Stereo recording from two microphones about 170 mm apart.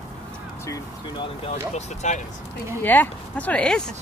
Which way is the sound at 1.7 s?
45° left (ahead or behind).